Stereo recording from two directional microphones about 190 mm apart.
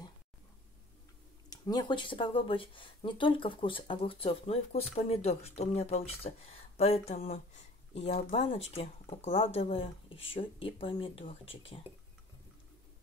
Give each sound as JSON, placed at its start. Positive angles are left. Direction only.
{"t": 1.5, "sound": "speech", "side_deg": 20}